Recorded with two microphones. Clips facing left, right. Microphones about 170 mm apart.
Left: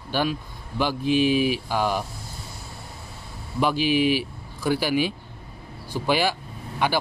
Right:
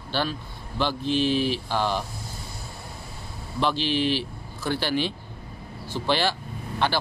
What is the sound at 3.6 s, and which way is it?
Speech, 10° left (ahead or behind).